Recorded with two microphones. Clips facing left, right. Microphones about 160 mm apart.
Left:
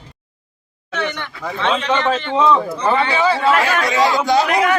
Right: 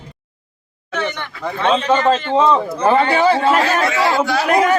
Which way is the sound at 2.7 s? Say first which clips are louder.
Right 3 dB; 50° right (ahead or behind).